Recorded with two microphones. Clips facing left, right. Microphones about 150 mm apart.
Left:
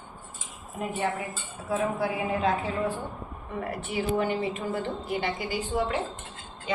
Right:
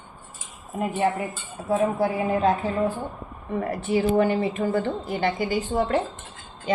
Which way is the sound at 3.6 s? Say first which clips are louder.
Right 7 dB; 40° right (ahead or behind).